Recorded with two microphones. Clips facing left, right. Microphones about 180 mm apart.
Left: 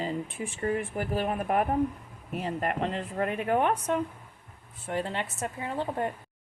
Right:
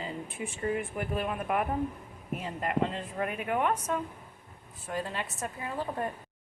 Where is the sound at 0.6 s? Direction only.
35° left (ahead or behind).